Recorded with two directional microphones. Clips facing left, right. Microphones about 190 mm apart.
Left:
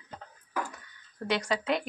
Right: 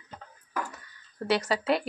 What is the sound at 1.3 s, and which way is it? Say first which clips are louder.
Speech: right 3 dB; 5° right (ahead or behind).